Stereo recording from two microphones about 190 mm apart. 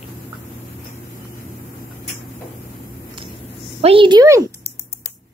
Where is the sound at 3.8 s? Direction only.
30° right (ahead or behind).